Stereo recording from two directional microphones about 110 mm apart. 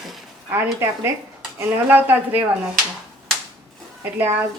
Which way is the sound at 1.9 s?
15° right (ahead or behind).